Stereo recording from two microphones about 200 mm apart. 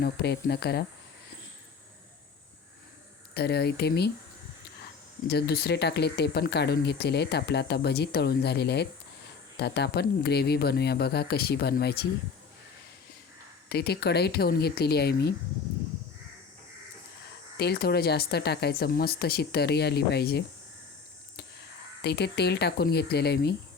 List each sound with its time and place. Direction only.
0.0 s speech: 55° left (ahead or behind)
3.3 s speech: 55° left (ahead or behind)
5.3 s speech: 55° left (ahead or behind)
13.7 s speech: 55° left (ahead or behind)
17.6 s speech: 50° left (ahead or behind)
22.0 s speech: 55° left (ahead or behind)